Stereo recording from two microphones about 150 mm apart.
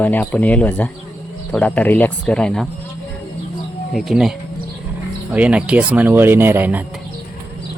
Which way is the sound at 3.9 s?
Centre (ahead or behind).